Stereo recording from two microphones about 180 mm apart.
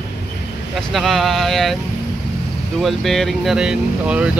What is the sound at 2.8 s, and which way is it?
Speech, centre (ahead or behind).